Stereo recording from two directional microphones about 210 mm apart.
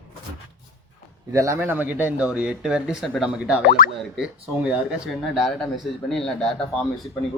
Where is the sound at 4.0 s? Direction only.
5° right (ahead or behind).